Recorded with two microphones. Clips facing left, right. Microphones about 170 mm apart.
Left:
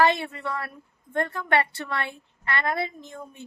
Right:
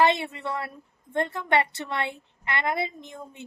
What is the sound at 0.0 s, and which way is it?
A woman's voice, 20° right (ahead or behind).